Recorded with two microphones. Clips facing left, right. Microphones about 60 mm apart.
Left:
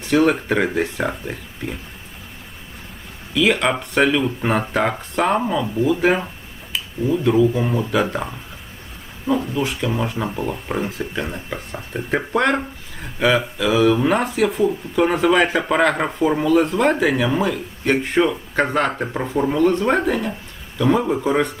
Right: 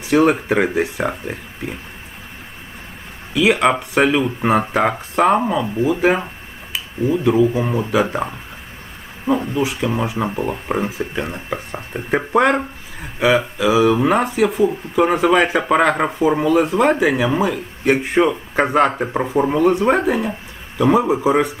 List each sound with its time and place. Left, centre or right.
0.0 s speech: centre
3.3 s speech: centre
9.6 s speech: centre
10.2 s speech: centre